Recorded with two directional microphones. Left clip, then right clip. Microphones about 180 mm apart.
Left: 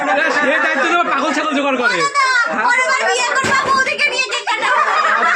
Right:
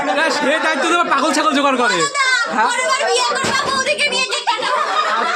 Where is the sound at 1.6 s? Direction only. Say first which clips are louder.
Even; 30° right (ahead or behind).